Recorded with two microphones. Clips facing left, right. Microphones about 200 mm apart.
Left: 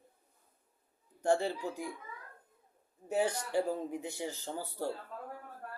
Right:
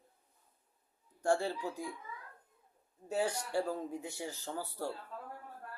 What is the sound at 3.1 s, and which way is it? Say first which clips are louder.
A man's voice: left 2 dB; 20° left (ahead or behind).